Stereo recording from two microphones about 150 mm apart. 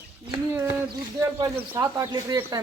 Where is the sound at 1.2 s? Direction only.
20° right (ahead or behind).